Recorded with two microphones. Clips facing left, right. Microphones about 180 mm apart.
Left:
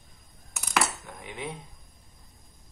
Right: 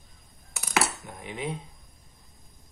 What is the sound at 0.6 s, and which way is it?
Coin, 5° right (ahead or behind).